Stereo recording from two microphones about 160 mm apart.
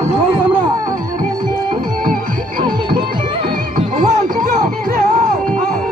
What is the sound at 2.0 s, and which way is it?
Music, 60° right (ahead or behind).